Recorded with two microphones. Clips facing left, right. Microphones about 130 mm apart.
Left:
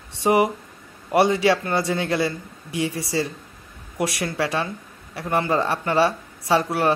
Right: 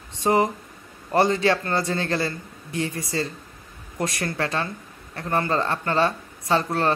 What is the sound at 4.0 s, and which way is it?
Speech, 10° left (ahead or behind).